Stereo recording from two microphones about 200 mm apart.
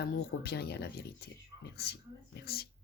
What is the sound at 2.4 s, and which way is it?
Speech, 50° left (ahead or behind).